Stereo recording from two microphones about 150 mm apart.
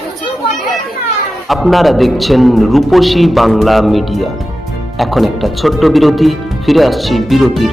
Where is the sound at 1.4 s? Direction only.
Centre (ahead or behind).